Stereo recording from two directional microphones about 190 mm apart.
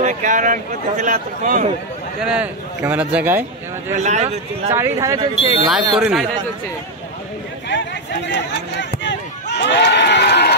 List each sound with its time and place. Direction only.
0.0 s a man's voice: 40° right (ahead or behind)
2.2 s a man's voice: 5° right (ahead or behind)
3.9 s speech: 35° right (ahead or behind)
4.7 s a man's voice: 15° right (ahead or behind)
5.7 s speech: centre (ahead or behind)
7.7 s a sound: 65° left (ahead or behind)